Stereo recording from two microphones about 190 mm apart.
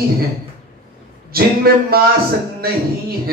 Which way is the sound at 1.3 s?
55° right (ahead or behind).